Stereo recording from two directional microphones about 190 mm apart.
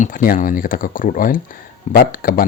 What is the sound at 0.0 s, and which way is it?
Speech, 45° left (ahead or behind).